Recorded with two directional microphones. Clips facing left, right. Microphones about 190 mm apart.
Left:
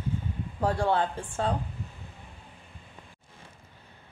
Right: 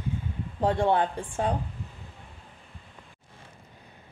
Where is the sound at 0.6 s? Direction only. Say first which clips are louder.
Right 2 dB; 20° right (ahead or behind).